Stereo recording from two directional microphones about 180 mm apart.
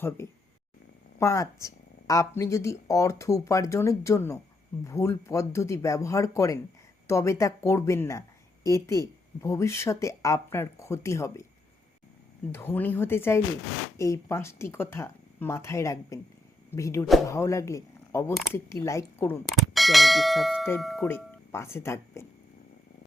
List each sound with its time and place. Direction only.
0.2 s speech: 15° left (ahead or behind)
12.5 s speech: 15° left (ahead or behind)
19.5 s speech: centre (ahead or behind)
21.0 s speech: 15° left (ahead or behind)